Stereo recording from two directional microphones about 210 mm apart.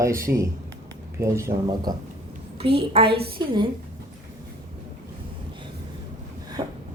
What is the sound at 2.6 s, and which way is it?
Speech, 25° right (ahead or behind).